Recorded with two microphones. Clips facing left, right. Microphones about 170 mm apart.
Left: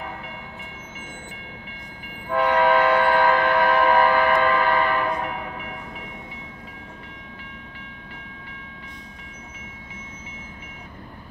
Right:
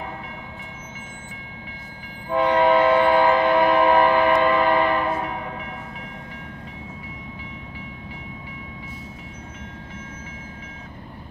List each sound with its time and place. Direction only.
2.3 s train: 25° right (ahead or behind)